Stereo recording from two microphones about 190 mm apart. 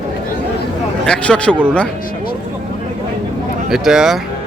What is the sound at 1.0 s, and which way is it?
Speech, 5° left (ahead or behind).